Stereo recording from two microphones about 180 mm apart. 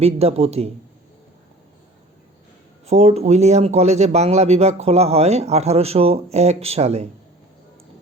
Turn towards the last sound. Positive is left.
turn(degrees=-35)  # may be behind; listen again after turning